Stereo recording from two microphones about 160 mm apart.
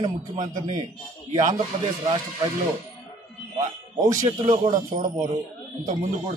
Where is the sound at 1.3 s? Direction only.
25° right (ahead or behind).